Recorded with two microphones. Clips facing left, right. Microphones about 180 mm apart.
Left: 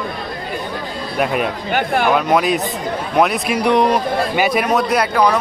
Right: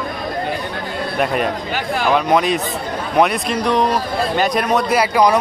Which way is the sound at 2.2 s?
5° left (ahead or behind).